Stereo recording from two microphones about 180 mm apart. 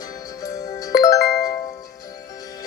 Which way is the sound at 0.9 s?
20° left (ahead or behind).